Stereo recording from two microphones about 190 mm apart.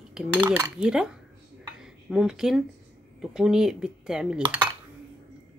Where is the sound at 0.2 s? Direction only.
5° right (ahead or behind).